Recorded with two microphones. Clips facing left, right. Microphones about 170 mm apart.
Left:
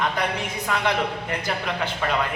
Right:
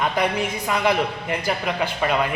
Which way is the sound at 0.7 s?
10° right (ahead or behind).